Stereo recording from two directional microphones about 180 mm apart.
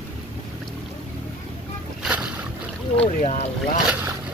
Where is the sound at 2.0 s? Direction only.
5° right (ahead or behind).